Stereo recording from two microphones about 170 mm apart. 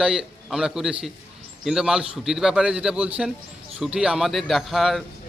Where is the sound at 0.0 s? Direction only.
5° right (ahead or behind).